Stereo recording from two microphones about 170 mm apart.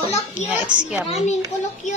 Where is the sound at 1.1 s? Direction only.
45° left (ahead or behind).